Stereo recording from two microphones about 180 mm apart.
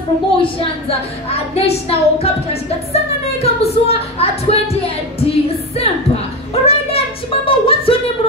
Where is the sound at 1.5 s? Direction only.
35° left (ahead or behind).